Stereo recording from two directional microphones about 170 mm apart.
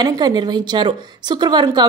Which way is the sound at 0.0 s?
25° right (ahead or behind).